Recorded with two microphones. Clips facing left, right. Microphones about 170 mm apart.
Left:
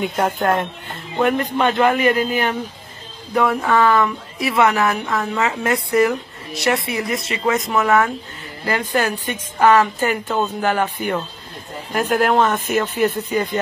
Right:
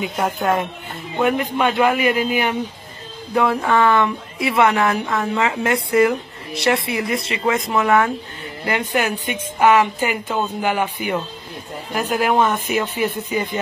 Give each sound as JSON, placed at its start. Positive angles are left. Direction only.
{"t": 0.0, "sound": "a woman's voice", "side_deg": 0}
{"t": 3.3, "sound": "speech", "side_deg": -25}
{"t": 8.7, "sound": "a woman's voice", "side_deg": -10}